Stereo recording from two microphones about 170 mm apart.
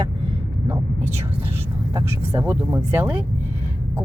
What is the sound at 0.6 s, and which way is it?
Speech, 15° right (ahead or behind).